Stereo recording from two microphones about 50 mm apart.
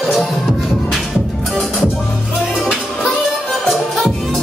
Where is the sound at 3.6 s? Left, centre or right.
Centre.